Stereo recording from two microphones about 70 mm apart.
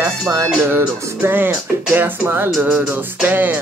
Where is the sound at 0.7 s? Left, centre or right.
Right.